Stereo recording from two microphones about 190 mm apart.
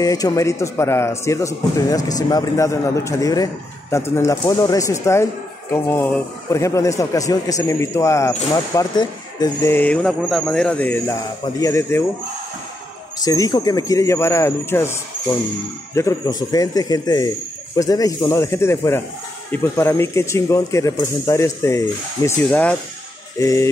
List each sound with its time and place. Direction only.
0.0 s speech: 20° left (ahead or behind)
13.2 s speech: 20° left (ahead or behind)